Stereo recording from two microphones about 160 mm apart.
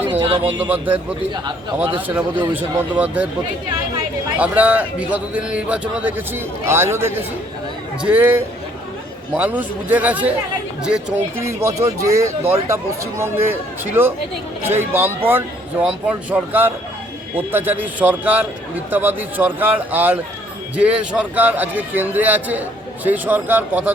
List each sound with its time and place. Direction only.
0.2 s speech: 30° right (ahead or behind)
0.6 s a man's voice: 10° right (ahead or behind)
2.0 s a man's voice: 10° right (ahead or behind)
4.4 s a man's voice: 10° right (ahead or behind)
11.3 s a man's voice: 20° right (ahead or behind)